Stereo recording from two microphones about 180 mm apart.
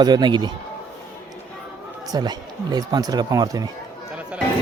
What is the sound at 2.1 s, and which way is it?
Speech, 20° right (ahead or behind).